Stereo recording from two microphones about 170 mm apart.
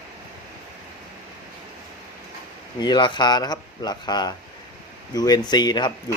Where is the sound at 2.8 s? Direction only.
25° left (ahead or behind).